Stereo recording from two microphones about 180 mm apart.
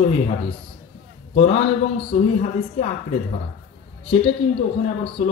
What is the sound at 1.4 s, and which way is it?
Speech, 35° left (ahead or behind).